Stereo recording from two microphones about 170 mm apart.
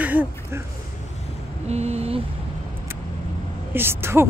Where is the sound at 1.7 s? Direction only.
40° right (ahead or behind).